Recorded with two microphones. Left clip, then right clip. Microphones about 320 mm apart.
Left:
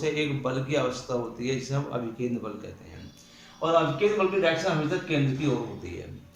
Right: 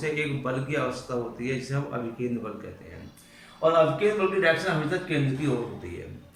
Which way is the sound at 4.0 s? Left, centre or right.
Centre.